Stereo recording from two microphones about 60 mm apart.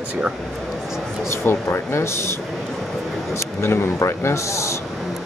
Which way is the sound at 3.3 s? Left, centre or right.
Left.